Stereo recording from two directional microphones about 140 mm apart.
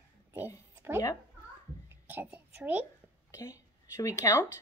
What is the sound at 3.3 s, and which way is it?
A woman's voice, 25° left (ahead or behind).